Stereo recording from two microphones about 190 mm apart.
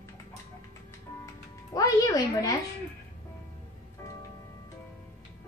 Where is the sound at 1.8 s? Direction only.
20° left (ahead or behind).